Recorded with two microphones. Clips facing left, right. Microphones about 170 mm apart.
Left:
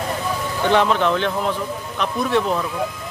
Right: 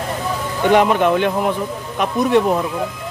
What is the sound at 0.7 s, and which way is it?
A man's voice, 15° right (ahead or behind).